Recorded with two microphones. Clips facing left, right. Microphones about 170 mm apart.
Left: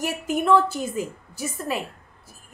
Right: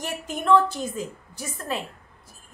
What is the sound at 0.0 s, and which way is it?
A woman's voice, 10° left (ahead or behind).